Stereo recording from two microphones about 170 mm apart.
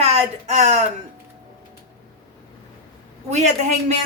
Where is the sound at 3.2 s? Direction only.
40° right (ahead or behind).